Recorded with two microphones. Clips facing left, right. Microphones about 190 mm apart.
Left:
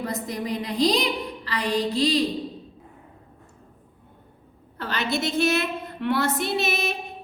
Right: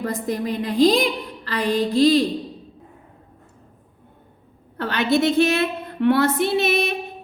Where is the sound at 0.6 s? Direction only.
50° right (ahead or behind).